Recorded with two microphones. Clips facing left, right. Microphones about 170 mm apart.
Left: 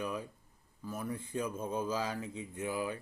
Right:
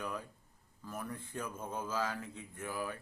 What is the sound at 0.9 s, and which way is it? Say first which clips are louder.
Speech: left 4 dB; 10° left (ahead or behind).